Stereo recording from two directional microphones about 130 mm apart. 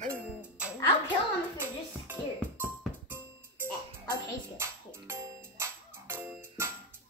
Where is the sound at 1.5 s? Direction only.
15° right (ahead or behind).